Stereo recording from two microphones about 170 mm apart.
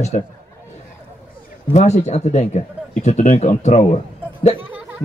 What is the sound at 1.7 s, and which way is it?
Speech, 45° left (ahead or behind).